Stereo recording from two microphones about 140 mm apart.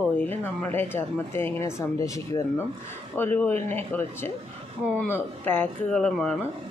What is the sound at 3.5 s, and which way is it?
Speech, 50° right (ahead or behind).